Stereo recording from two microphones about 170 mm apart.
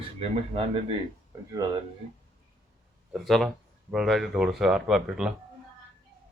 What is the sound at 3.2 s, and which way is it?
Speech, centre (ahead or behind).